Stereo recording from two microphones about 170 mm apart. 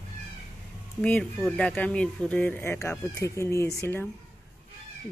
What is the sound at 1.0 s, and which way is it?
Speech, 5° left (ahead or behind).